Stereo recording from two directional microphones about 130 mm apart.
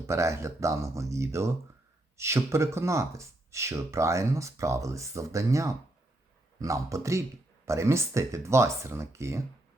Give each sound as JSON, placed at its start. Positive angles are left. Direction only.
{"t": 0.1, "sound": "speech", "side_deg": -20}